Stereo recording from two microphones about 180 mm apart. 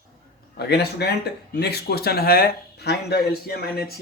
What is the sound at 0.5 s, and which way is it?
Speech, 65° left (ahead or behind).